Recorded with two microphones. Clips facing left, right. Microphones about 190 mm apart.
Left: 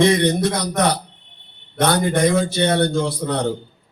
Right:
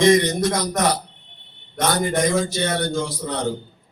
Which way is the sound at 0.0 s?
60° left (ahead or behind).